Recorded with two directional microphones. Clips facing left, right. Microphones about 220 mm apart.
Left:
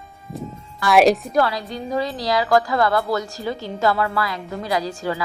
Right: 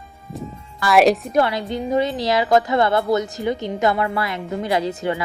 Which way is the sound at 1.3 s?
25° right (ahead or behind).